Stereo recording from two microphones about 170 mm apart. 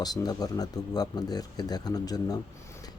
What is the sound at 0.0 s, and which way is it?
Speech, 25° left (ahead or behind).